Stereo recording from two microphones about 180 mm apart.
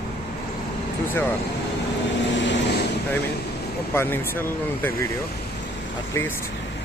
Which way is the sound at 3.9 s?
10° left (ahead or behind).